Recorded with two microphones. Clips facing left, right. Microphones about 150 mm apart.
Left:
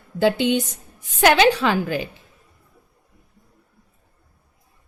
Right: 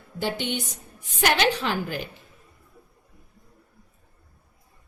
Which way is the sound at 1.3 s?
90° left.